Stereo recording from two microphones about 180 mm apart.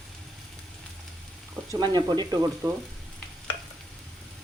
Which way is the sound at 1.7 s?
20° right (ahead or behind).